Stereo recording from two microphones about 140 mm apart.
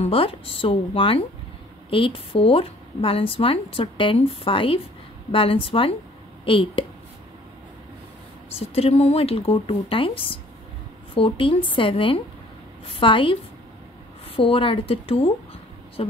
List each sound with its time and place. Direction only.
0.0 s speech: 40° left (ahead or behind)
8.5 s speech: 45° left (ahead or behind)